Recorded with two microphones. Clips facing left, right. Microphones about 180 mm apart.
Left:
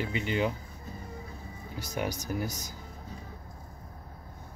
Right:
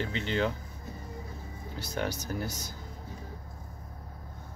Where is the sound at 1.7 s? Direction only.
15° left (ahead or behind).